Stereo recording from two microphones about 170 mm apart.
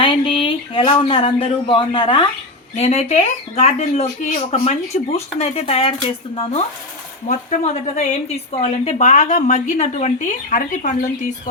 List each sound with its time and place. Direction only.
0.0 s speech: 30° left (ahead or behind)
7.3 s a woman's voice: 45° left (ahead or behind)